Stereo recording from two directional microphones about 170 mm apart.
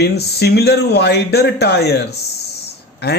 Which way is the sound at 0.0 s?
70° left (ahead or behind).